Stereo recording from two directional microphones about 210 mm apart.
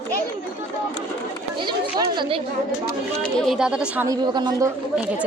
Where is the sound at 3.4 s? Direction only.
Centre (ahead or behind).